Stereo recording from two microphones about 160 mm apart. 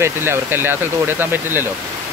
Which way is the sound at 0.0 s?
15° right (ahead or behind).